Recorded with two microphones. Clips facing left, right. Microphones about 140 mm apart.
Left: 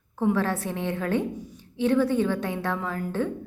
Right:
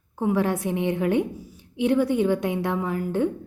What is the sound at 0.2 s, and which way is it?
A woman's voice, 15° right (ahead or behind).